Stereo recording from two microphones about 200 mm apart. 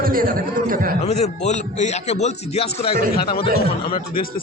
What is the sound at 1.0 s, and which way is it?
Music, 30° left (ahead or behind).